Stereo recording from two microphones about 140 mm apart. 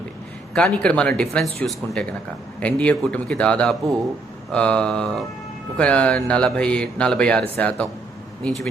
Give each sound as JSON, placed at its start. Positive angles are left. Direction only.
{"t": 0.5, "sound": "speech", "side_deg": 10}